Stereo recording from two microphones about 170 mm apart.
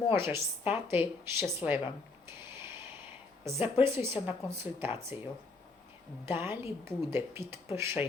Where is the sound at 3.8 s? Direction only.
15° right (ahead or behind).